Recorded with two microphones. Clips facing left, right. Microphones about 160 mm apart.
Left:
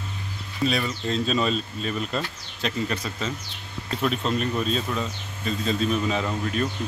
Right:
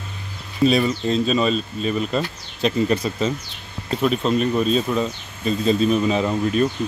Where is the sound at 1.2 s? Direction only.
5° right (ahead or behind).